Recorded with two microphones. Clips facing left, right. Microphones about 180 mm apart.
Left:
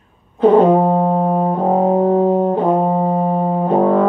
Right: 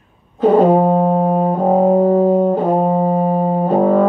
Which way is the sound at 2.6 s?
35° right (ahead or behind).